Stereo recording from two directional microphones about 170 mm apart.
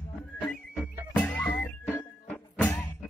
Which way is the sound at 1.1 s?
10° left (ahead or behind).